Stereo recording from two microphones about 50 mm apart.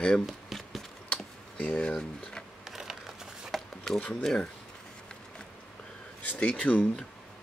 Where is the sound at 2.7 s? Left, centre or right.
Centre.